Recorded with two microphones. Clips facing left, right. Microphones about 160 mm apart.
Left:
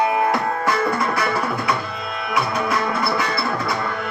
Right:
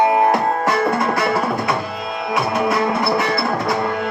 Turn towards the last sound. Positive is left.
turn(degrees=-25)  # may be behind; listen again after turning